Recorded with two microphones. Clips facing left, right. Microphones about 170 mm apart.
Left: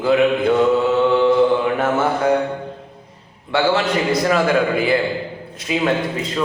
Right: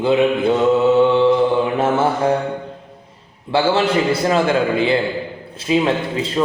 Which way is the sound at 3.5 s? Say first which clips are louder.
Right 1 dB; 30° right (ahead or behind).